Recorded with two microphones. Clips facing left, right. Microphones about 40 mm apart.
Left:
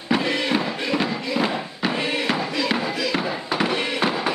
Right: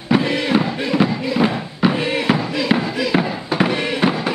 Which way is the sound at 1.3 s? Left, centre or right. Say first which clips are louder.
Right 4 dB; centre.